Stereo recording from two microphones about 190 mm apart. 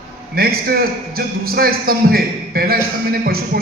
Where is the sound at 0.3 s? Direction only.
55° right (ahead or behind).